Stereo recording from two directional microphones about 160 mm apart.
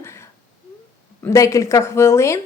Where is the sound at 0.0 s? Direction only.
15° left (ahead or behind).